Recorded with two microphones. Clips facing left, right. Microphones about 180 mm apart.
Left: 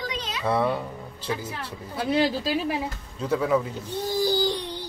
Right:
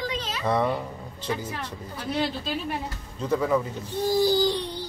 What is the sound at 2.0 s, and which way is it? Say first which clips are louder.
Speech: left 5 dB; 90° left.